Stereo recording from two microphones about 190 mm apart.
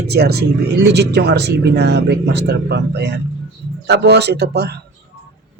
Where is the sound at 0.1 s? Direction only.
60° right (ahead or behind).